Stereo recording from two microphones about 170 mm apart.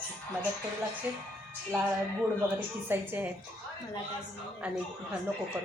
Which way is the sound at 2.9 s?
10° right (ahead or behind).